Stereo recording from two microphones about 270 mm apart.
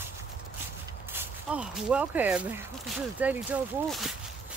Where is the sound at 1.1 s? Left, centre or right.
Centre.